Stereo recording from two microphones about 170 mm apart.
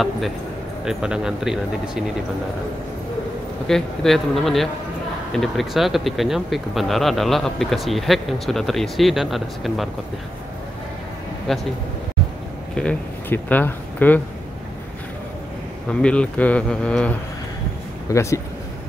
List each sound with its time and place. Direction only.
0.8 s speech: 5° right (ahead or behind)
3.6 s speech: centre (ahead or behind)
11.5 s speech: centre (ahead or behind)
12.7 s speech: 10° left (ahead or behind)
15.9 s speech: 5° left (ahead or behind)
18.1 s speech: 15° left (ahead or behind)